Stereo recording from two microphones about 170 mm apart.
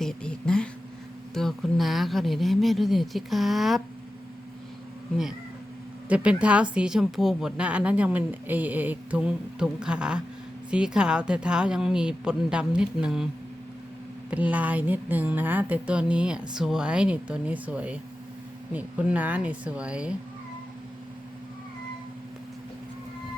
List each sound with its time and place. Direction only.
0.0 s a sound: 5° left (ahead or behind)
1.3 s a woman's voice: centre (ahead or behind)
6.1 s a woman's voice: 5° right (ahead or behind)
14.3 s speech: 10° right (ahead or behind)